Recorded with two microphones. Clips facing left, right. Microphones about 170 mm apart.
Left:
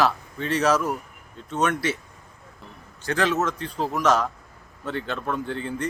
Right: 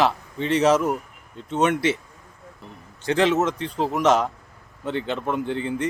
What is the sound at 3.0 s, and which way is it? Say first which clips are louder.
Speech: right 4 dB; 25° right (ahead or behind).